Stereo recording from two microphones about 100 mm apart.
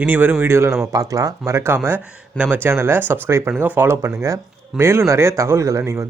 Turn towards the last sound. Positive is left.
turn(degrees=-30)  # may be behind; listen again after turning